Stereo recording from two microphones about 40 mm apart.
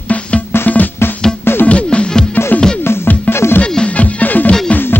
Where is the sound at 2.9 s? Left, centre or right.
Left.